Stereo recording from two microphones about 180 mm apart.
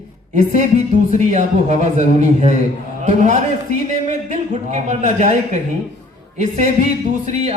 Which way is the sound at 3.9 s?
40° right (ahead or behind).